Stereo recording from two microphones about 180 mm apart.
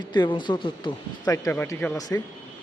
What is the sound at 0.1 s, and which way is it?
Speech, 25° left (ahead or behind).